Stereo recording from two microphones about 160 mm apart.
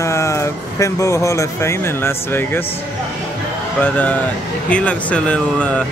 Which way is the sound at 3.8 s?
10° left (ahead or behind).